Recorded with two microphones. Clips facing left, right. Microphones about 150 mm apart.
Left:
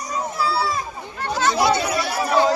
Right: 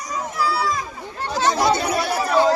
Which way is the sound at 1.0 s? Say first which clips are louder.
Even; 35° right (ahead or behind).